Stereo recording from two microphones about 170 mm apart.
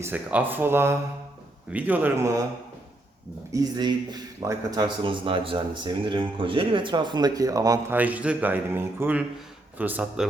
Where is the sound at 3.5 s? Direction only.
20° right (ahead or behind).